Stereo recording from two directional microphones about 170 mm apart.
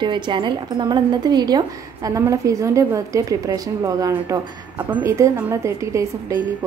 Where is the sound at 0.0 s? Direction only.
30° right (ahead or behind).